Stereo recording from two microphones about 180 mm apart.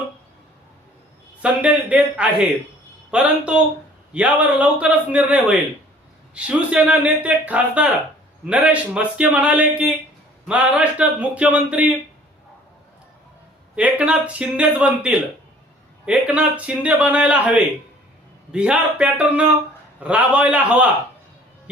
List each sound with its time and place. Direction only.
1.4 s a man's voice: 5° right (ahead or behind)
13.7 s speech: 5° right (ahead or behind)